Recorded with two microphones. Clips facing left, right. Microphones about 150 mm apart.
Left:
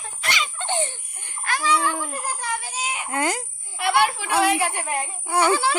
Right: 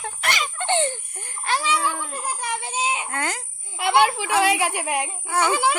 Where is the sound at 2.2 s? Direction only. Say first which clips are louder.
Even; 20° right (ahead or behind).